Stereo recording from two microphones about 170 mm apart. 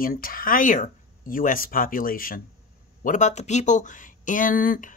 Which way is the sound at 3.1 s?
45° left (ahead or behind).